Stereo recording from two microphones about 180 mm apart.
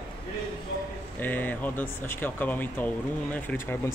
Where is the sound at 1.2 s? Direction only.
10° left (ahead or behind).